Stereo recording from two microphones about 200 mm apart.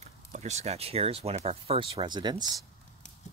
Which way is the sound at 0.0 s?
35° right (ahead or behind).